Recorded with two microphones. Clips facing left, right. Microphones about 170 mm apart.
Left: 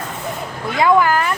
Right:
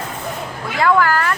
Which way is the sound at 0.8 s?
15° left (ahead or behind).